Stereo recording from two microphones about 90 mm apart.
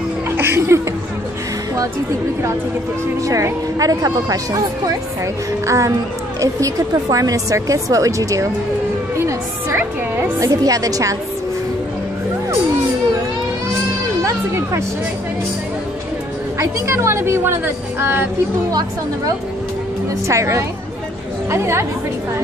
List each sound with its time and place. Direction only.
0.4 s speech: 25° right (ahead or behind)
3.3 s a woman's voice: 40° right (ahead or behind)
5.7 s a woman's voice: 35° right (ahead or behind)
9.2 s music: 25° right (ahead or behind)
10.4 s a woman's voice: 40° right (ahead or behind)
14.2 s music: 30° right (ahead or behind)
16.5 s a woman's voice: 30° right (ahead or behind)
18.7 s speech: 45° right (ahead or behind)
20.2 s a woman's voice: 35° right (ahead or behind)